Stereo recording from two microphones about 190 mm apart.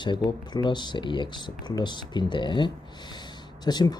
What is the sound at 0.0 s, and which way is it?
Speech, 25° left (ahead or behind).